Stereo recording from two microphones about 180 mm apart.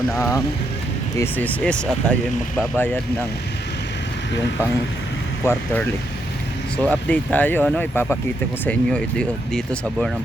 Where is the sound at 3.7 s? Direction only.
75° left (ahead or behind).